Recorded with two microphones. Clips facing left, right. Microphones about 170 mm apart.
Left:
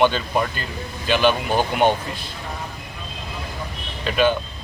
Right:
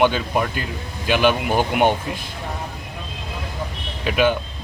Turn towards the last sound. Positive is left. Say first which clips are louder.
# even
turn(degrees=-10)  # may be behind; listen again after turning